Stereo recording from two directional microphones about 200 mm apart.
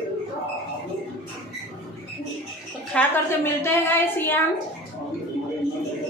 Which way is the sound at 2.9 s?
10° left (ahead or behind).